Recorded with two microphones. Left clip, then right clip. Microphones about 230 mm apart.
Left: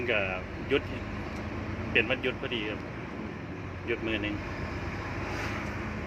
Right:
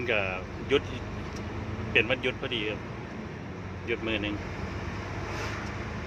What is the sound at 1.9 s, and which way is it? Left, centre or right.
Speech, centre.